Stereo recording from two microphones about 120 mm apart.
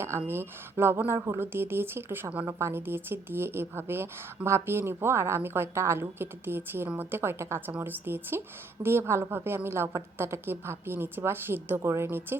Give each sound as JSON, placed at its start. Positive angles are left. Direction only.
{"t": 0.3, "sound": "a woman's voice", "side_deg": -20}